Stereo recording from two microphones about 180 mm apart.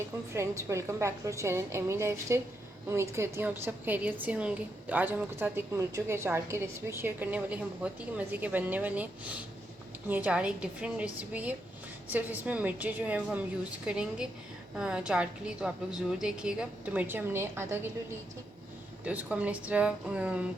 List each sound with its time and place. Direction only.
0.3 s a woman's voice: 15° right (ahead or behind)
10.1 s a woman's voice: 10° right (ahead or behind)
19.0 s a woman's voice: 5° right (ahead or behind)